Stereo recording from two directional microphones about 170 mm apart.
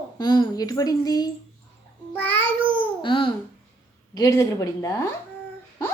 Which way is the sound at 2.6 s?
30° right (ahead or behind).